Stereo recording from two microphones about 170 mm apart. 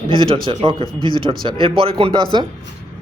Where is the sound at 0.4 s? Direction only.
30° right (ahead or behind).